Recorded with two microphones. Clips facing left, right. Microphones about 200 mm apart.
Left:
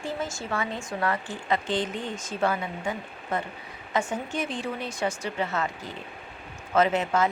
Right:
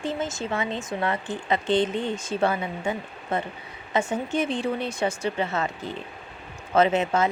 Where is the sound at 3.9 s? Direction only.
25° right (ahead or behind).